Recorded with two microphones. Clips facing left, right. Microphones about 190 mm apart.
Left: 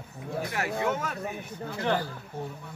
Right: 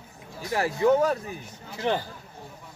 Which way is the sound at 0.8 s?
35° right (ahead or behind).